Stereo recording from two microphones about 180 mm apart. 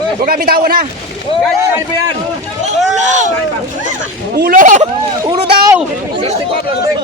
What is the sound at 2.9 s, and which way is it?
Speech, 40° right (ahead or behind).